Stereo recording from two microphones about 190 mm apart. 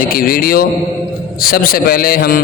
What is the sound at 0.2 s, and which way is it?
A man's voice, 50° left (ahead or behind).